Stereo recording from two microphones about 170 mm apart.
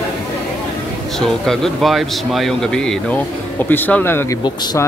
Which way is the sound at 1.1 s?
5° left (ahead or behind).